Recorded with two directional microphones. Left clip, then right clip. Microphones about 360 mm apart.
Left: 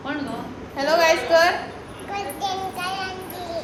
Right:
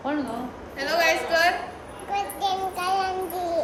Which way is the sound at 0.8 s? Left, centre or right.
Centre.